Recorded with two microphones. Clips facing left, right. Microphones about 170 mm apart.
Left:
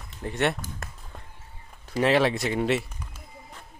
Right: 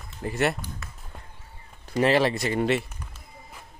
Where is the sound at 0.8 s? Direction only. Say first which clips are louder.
Left 3 dB; 50° left (ahead or behind).